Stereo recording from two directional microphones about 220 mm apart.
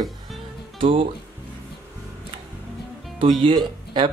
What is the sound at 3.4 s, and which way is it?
Speech, 20° right (ahead or behind).